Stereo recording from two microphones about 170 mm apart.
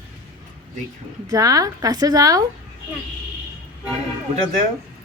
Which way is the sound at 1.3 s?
20° right (ahead or behind).